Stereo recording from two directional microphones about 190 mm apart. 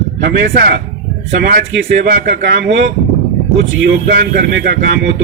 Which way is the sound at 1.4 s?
55° right (ahead or behind).